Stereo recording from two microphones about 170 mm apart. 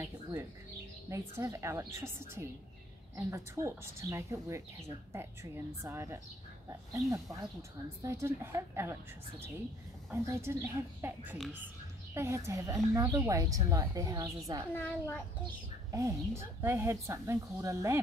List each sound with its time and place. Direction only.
0.0 s a woman's voice: 15° right (ahead or behind)
10.1 s a woman's voice: 15° right (ahead or behind)
14.7 s a child's voice: 10° left (ahead or behind)
15.9 s speech: 20° right (ahead or behind)